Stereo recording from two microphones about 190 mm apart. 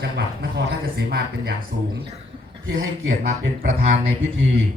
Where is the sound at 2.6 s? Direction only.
75° right (ahead or behind).